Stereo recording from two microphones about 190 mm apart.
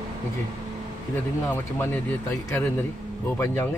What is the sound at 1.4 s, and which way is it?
Speech, 10° left (ahead or behind).